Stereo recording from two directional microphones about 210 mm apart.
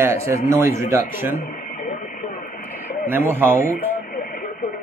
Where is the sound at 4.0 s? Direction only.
40° left (ahead or behind).